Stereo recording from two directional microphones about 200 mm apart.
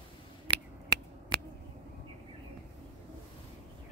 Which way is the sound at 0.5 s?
25° right (ahead or behind).